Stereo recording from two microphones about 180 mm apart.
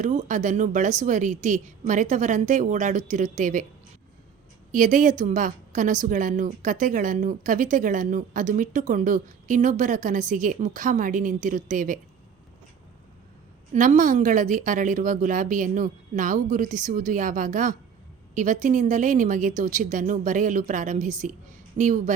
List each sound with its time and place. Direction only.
0.0 s a woman's voice: 45° right (ahead or behind)
4.7 s a woman's voice: 50° right (ahead or behind)
13.7 s a woman's voice: 45° right (ahead or behind)